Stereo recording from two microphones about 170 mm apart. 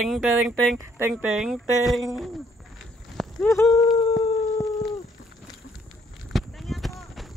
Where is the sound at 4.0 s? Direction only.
35° left (ahead or behind).